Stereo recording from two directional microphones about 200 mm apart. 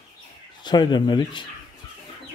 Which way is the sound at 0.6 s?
20° left (ahead or behind).